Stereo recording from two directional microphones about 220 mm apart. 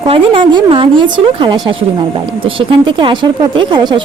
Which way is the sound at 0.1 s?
25° right (ahead or behind).